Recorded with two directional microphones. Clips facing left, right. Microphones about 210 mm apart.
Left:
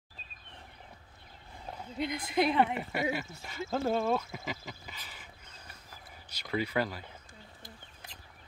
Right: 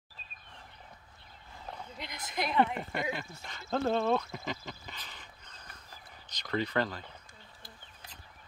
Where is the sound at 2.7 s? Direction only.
5° left (ahead or behind).